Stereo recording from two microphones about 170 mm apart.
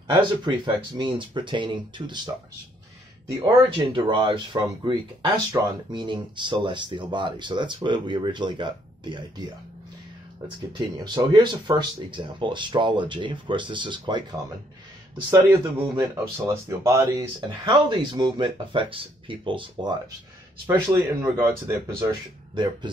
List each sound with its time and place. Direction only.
0.1 s speech: 30° right (ahead or behind)
3.3 s speech: 25° right (ahead or behind)
11.1 s speech: 25° right (ahead or behind)
16.0 s speech: 15° right (ahead or behind)
17.6 s speech: 25° right (ahead or behind)